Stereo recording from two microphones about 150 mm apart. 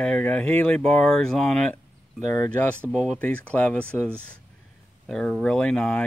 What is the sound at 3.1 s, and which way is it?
Speech, 10° left (ahead or behind).